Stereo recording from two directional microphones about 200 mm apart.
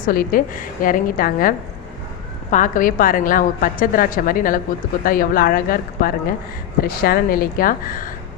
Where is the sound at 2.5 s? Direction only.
40° left (ahead or behind).